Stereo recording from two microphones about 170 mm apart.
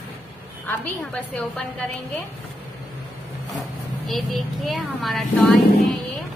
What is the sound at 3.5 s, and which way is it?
A woman's voice, centre (ahead or behind).